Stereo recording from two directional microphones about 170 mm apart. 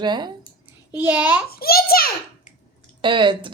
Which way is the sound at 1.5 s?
65° left (ahead or behind).